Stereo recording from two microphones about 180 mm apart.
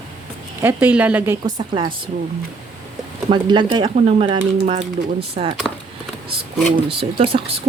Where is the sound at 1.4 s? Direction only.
25° right (ahead or behind).